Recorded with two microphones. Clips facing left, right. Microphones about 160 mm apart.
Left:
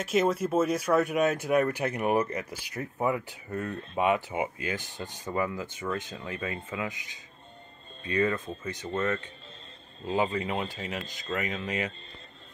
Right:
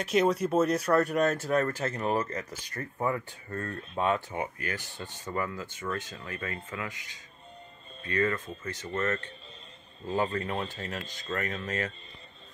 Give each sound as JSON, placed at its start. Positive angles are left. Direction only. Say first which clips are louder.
{"t": 0.0, "sound": "speech", "louder": "even", "side_deg": 5}